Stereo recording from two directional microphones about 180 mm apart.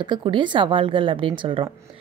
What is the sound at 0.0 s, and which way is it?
A woman's voice, 25° right (ahead or behind).